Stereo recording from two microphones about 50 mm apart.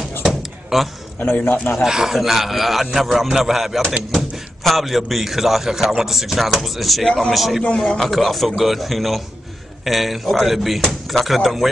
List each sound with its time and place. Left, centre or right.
0.2 s a sound: centre
1.2 s a man's voice: left
1.9 s a man's voice: centre